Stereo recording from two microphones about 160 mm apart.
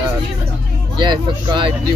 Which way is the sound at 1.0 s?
30° right (ahead or behind).